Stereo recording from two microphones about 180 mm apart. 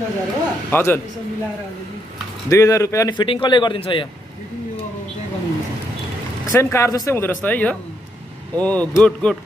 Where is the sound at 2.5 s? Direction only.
15° left (ahead or behind).